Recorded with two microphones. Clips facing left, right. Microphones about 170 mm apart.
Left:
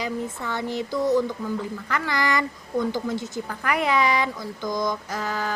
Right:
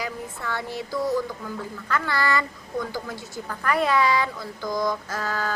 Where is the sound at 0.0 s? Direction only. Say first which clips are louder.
Left 3 dB; 20° left (ahead or behind).